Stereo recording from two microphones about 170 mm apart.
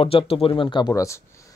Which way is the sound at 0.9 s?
15° left (ahead or behind).